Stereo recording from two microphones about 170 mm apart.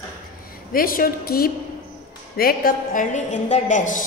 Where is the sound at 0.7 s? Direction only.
55° left (ahead or behind).